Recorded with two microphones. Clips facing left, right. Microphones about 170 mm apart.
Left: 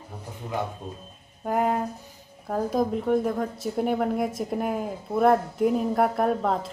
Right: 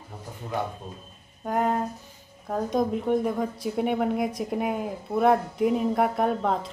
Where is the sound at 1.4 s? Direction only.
5° left (ahead or behind).